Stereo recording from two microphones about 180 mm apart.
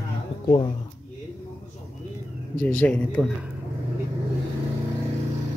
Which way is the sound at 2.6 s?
10° left (ahead or behind).